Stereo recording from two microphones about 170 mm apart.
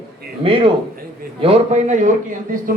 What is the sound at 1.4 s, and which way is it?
A man's voice, 35° right (ahead or behind).